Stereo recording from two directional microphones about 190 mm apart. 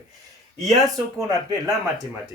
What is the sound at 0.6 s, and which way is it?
Speech, centre (ahead or behind).